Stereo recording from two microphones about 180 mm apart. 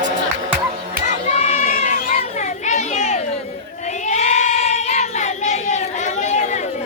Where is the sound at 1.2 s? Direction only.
35° left (ahead or behind).